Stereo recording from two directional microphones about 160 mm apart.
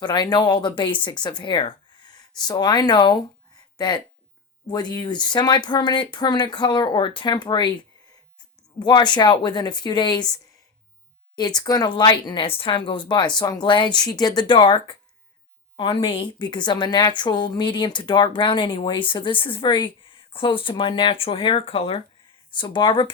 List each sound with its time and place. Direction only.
0.0 s speech: 25° left (ahead or behind)
8.8 s a woman's voice: 25° left (ahead or behind)